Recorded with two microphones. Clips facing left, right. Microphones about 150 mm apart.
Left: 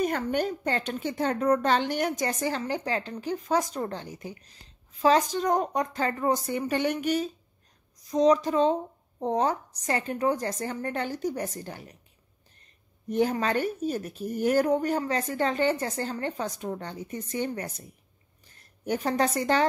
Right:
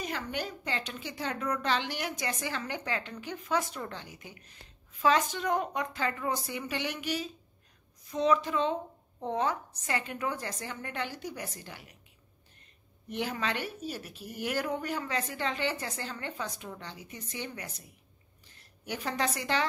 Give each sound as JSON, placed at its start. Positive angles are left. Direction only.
{"t": 0.0, "sound": "a woman's voice", "side_deg": 50}
{"t": 13.1, "sound": "a woman's voice", "side_deg": 40}